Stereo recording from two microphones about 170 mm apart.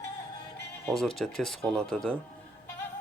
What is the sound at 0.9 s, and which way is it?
Speech, centre (ahead or behind).